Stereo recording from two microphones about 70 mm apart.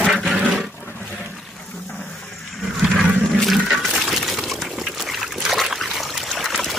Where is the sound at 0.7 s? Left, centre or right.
Left.